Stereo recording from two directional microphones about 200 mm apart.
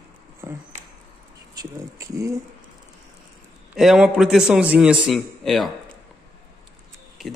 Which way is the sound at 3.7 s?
Centre (ahead or behind).